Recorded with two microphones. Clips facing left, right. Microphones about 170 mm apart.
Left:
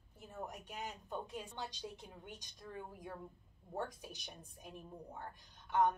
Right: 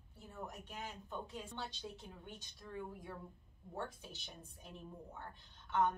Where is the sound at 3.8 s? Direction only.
15° left (ahead or behind).